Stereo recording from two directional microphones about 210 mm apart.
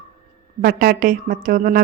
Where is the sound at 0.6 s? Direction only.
45° right (ahead or behind).